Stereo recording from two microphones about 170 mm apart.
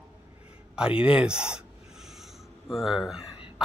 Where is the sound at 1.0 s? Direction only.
5° right (ahead or behind).